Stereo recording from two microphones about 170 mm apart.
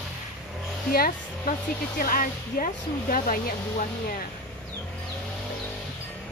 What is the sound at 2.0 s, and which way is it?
Speech, 55° left (ahead or behind).